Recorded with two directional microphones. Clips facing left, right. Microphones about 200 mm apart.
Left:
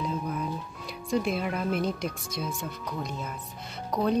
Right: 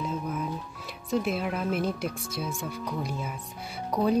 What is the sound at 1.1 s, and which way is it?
Speech, centre (ahead or behind).